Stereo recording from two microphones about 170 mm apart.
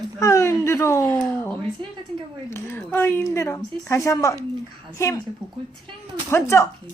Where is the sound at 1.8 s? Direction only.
30° right (ahead or behind).